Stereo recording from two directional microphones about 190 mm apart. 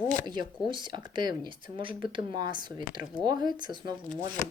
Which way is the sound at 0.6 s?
25° right (ahead or behind).